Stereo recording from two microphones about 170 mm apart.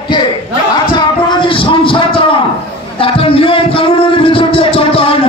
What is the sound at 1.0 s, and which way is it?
Music, 30° left (ahead or behind).